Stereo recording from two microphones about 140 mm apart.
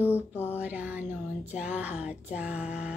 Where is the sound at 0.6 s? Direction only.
10° right (ahead or behind).